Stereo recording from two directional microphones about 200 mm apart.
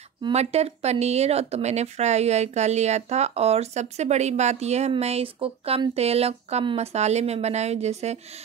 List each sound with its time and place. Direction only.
0.2 s speech: 30° right (ahead or behind)